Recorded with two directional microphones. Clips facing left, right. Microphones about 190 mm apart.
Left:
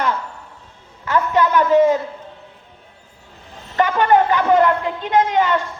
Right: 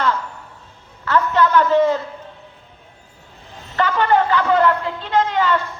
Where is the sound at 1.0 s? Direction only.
15° left (ahead or behind).